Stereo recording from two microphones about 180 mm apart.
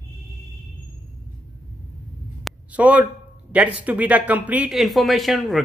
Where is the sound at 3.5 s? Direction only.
10° right (ahead or behind).